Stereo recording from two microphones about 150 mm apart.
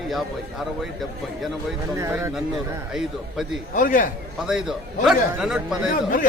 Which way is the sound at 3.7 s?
65° left (ahead or behind).